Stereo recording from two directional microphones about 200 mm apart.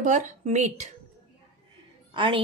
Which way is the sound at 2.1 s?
25° right (ahead or behind).